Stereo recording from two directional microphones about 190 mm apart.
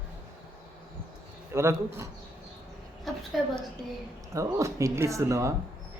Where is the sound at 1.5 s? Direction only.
15° right (ahead or behind).